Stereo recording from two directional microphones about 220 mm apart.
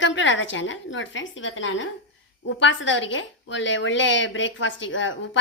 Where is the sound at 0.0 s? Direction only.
55° left (ahead or behind).